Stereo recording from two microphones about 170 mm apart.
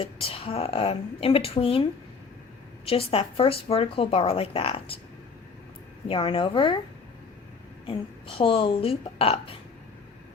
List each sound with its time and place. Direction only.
0.0 s speech: 35° left (ahead or behind)
6.1 s speech: 30° left (ahead or behind)
8.4 s speech: 30° left (ahead or behind)